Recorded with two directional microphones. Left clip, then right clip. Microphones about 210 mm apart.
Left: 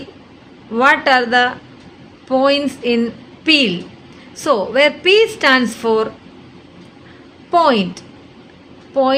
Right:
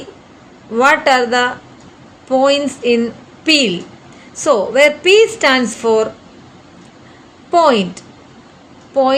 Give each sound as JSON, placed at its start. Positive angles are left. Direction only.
{"t": 0.7, "sound": "speech", "side_deg": 15}
{"t": 7.5, "sound": "speech", "side_deg": 15}